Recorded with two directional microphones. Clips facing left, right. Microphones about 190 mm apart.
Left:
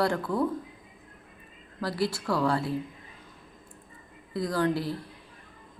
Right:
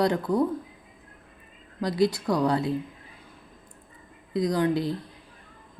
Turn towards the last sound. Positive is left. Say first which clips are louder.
# right 3 dB
turn(degrees=-20)  # may be behind; listen again after turning